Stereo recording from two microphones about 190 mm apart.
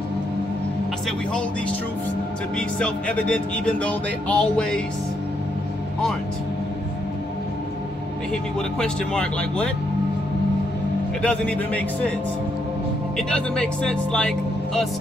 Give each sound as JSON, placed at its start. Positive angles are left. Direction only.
{"t": 2.8, "sound": "music", "side_deg": 5}
{"t": 8.5, "sound": "music", "side_deg": 5}
{"t": 11.2, "sound": "speech", "side_deg": 5}
{"t": 13.3, "sound": "music", "side_deg": 5}